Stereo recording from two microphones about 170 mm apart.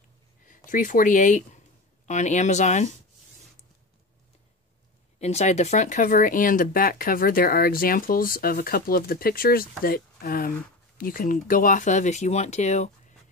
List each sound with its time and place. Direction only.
0.5 s speech: 50° left (ahead or behind)
5.2 s speech: 40° left (ahead or behind)